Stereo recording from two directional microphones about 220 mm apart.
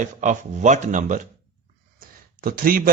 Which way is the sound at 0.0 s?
35° right (ahead or behind).